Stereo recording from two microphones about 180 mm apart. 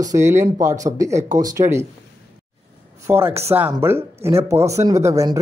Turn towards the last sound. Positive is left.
turn(degrees=-15)  # may be behind; listen again after turning